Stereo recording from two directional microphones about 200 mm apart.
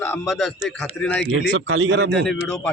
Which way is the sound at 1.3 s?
70° right (ahead or behind).